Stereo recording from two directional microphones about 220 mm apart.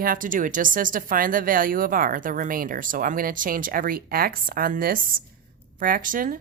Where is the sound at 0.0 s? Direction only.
40° right (ahead or behind).